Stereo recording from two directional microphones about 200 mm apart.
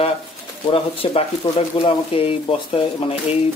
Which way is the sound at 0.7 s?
30° left (ahead or behind).